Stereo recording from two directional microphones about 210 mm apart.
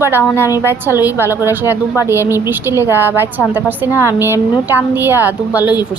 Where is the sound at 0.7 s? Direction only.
10° right (ahead or behind).